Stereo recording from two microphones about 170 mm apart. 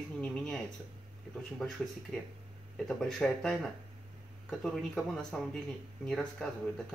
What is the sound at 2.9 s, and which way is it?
Speech, 5° left (ahead or behind).